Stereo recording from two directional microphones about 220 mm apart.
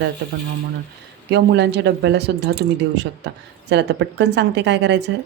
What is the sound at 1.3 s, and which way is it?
Speech, 50° right (ahead or behind).